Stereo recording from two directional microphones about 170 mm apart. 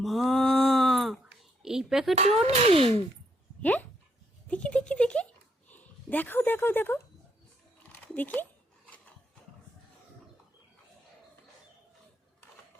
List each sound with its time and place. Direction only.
0.0 s a sound: centre (ahead or behind)
2.1 s speech: 40° right (ahead or behind)
3.6 s speech: 10° left (ahead or behind)
8.0 s speech: 10° left (ahead or behind)